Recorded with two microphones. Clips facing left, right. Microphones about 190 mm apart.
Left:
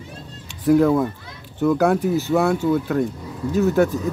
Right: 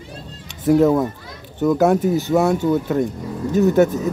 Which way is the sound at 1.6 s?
15° right (ahead or behind).